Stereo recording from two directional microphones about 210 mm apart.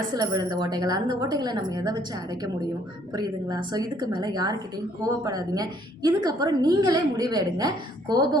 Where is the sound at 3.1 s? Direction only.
20° right (ahead or behind).